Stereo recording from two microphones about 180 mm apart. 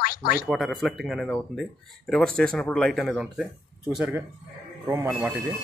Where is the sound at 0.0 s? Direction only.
55° left (ahead or behind).